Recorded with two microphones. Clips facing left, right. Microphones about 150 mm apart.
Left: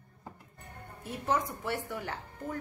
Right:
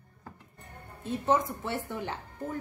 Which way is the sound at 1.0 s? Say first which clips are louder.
Right 4 dB; 25° right (ahead or behind).